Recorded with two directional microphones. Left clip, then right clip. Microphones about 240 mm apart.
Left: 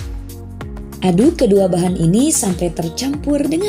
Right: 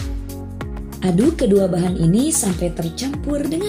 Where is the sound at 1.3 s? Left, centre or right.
Centre.